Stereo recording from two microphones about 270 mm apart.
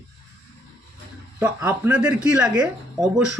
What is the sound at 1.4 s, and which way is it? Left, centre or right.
Speech, centre.